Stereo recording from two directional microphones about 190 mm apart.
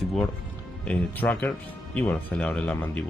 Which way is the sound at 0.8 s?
10° left (ahead or behind).